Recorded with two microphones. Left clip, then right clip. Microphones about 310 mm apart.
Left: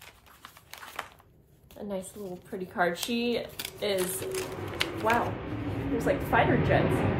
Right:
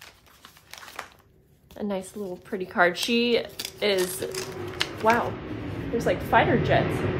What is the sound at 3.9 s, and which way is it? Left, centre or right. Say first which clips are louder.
Speech: right 4 dB; centre.